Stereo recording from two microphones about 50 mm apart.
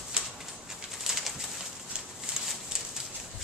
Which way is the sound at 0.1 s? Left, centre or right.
Centre.